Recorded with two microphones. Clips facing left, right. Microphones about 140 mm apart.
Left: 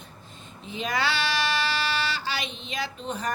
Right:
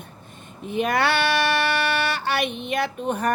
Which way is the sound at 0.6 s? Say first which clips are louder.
Right 6 dB; 55° right (ahead or behind).